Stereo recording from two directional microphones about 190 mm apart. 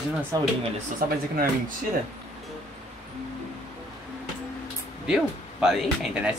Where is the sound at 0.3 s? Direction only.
20° right (ahead or behind).